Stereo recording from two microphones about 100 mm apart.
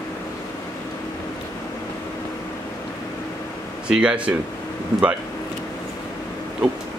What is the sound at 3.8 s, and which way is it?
Speech, 10° right (ahead or behind).